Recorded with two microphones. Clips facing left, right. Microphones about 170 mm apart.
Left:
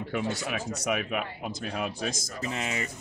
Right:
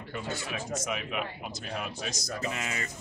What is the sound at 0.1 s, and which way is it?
Speech, 70° left (ahead or behind).